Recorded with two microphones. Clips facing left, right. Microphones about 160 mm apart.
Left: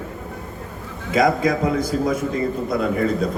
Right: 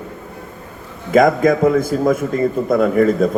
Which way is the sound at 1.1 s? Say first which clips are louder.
Right 6 dB; 50° right (ahead or behind).